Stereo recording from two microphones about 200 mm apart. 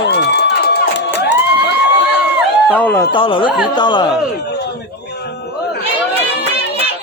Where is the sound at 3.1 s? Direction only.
25° left (ahead or behind).